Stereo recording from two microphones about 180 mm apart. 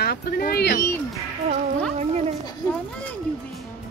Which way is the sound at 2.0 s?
35° right (ahead or behind).